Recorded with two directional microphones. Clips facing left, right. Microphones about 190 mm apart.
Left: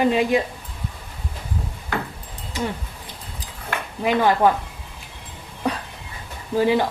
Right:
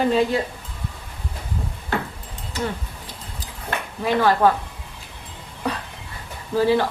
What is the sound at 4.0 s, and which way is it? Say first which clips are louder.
Speech: even; 15° left (ahead or behind).